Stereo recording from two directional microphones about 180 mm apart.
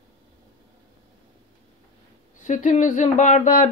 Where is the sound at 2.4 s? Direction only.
45° left (ahead or behind).